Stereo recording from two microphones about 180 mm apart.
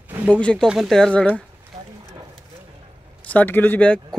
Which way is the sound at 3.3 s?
10° left (ahead or behind).